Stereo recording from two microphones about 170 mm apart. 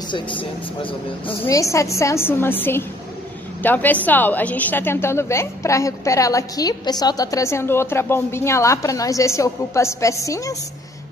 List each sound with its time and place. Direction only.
0.1 s speech: 30° left (ahead or behind)
1.4 s a woman's voice: 20° left (ahead or behind)